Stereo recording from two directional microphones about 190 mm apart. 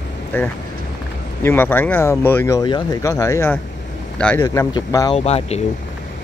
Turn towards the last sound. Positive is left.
turn(degrees=35)  # may be behind; listen again after turning